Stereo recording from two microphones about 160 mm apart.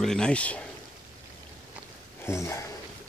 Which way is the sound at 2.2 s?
15° left (ahead or behind).